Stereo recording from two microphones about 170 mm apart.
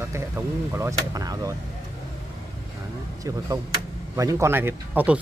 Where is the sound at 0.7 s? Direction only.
20° right (ahead or behind).